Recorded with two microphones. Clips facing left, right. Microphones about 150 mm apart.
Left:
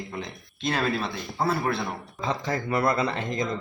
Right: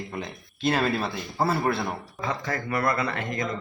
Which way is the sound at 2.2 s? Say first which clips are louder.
Left 2 dB; 20° left (ahead or behind).